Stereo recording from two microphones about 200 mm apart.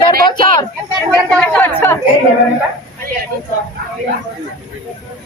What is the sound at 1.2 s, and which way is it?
Speech, 5° left (ahead or behind).